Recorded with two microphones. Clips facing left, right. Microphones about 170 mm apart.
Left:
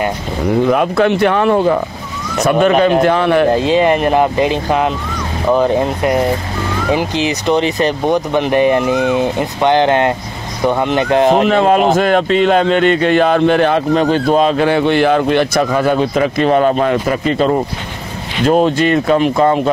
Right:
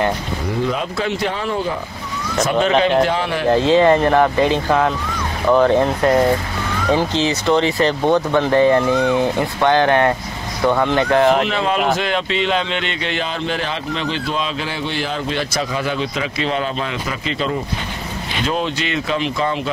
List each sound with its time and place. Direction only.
0.7 s a man's voice: 60° left (ahead or behind)
3.5 s speech: 15° left (ahead or behind)
11.4 s a man's voice: 45° left (ahead or behind)